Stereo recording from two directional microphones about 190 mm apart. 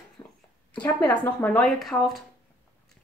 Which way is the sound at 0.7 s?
10° left (ahead or behind).